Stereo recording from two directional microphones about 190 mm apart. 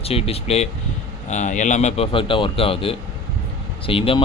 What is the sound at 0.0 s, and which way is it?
Speech, 30° left (ahead or behind).